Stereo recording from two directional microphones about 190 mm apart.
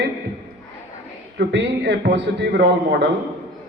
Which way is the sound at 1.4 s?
65° right (ahead or behind).